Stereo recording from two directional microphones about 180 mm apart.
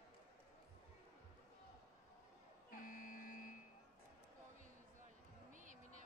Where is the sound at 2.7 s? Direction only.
50° left (ahead or behind).